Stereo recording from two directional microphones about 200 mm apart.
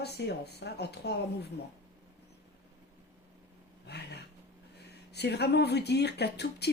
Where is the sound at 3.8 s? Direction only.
55° left (ahead or behind).